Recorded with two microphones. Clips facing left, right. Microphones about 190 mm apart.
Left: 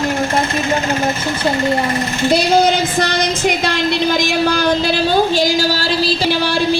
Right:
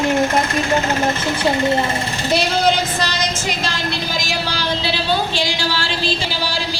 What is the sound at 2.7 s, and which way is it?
A woman's voice, 55° left (ahead or behind).